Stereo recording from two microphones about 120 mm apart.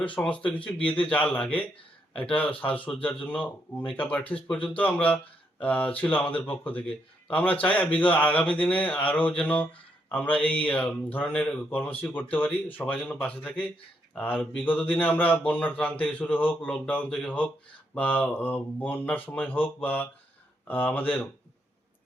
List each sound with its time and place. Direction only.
0.2 s speech: 10° left (ahead or behind)